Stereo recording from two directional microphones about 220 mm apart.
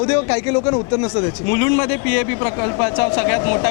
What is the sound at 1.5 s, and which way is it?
A man's voice, 15° left (ahead or behind).